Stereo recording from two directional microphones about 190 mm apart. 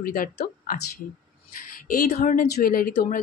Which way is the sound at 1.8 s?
45° left (ahead or behind).